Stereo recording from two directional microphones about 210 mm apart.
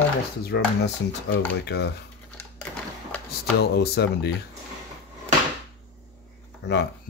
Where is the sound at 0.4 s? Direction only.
50° left (ahead or behind).